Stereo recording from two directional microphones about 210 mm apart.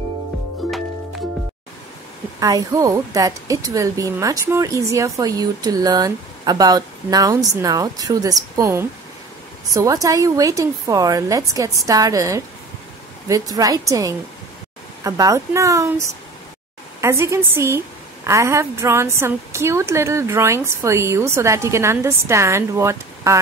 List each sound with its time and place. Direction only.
0.6 s music: centre (ahead or behind)
2.4 s a woman's voice: 15° right (ahead or behind)